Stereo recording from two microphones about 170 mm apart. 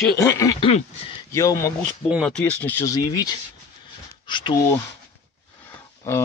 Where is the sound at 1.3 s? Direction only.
15° left (ahead or behind).